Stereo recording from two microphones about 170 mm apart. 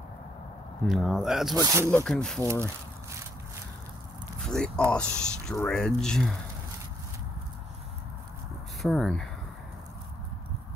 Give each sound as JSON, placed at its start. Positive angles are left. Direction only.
{"t": 0.8, "sound": "speech", "side_deg": 0}
{"t": 1.6, "sound": "speech", "side_deg": -20}
{"t": 2.0, "sound": "speech", "side_deg": 5}
{"t": 4.4, "sound": "speech", "side_deg": 5}
{"t": 8.8, "sound": "speech", "side_deg": 0}